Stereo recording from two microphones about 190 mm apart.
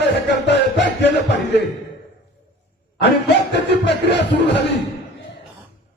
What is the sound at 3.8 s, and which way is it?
Speech, 65° left (ahead or behind).